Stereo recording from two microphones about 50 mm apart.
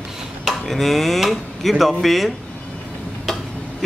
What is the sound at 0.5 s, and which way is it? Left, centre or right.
Speech, centre.